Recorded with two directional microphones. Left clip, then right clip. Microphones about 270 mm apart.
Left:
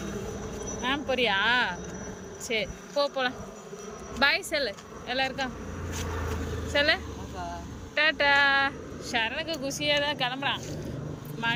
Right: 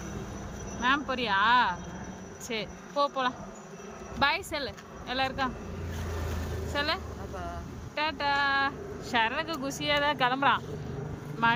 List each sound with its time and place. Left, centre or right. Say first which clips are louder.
0.9 s speech: left 1 dB; centre
6.7 s speech: left 6 dB; centre